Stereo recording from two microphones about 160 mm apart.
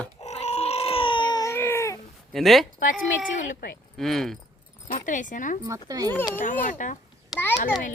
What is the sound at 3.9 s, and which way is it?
Speech, centre (ahead or behind).